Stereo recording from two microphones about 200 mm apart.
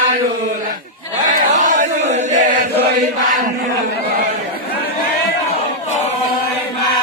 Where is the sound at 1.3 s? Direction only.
40° right (ahead or behind).